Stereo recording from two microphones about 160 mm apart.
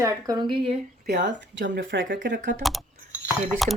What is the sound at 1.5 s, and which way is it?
Speech, 90° right.